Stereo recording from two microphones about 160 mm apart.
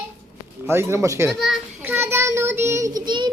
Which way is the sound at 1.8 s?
15° right (ahead or behind).